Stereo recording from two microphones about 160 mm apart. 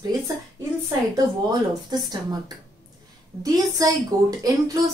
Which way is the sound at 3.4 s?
25° right (ahead or behind).